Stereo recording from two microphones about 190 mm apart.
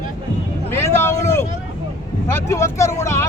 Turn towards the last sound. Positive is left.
turn(degrees=15)  # may be behind; listen again after turning